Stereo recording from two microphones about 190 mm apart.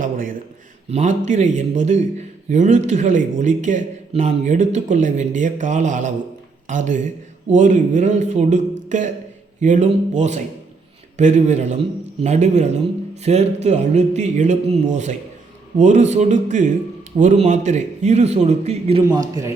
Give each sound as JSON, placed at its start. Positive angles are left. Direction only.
{"t": 0.0, "sound": "a man's voice", "side_deg": -45}
{"t": 15.8, "sound": "speech", "side_deg": -40}
{"t": 19.0, "sound": "speech", "side_deg": -15}